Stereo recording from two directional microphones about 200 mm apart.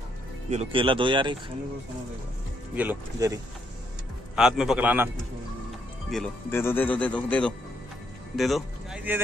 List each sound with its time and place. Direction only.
0.5 s speech: 30° right (ahead or behind)
2.7 s speech: 10° right (ahead or behind)
4.4 s speech: 5° right (ahead or behind)
6.0 s a man's voice: centre (ahead or behind)